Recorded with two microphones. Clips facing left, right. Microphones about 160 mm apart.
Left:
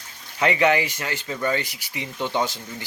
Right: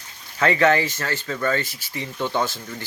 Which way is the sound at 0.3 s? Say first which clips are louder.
Right 1 dB; 15° left (ahead or behind).